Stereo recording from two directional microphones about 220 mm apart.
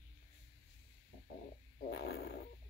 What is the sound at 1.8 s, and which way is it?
Snoring, 50° left (ahead or behind).